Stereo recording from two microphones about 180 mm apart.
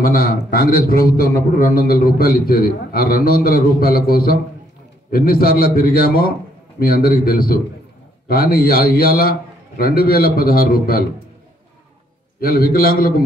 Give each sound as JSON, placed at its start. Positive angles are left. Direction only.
{"t": 0.0, "sound": "a man's voice", "side_deg": 55}
{"t": 12.4, "sound": "a man's voice", "side_deg": 55}